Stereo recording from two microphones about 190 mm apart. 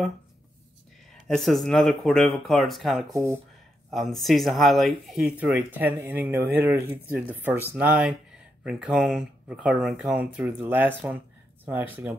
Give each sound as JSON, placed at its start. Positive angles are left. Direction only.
{"t": 1.2, "sound": "speech", "side_deg": 0}
{"t": 3.1, "sound": "speech", "side_deg": -15}
{"t": 3.9, "sound": "speech", "side_deg": 0}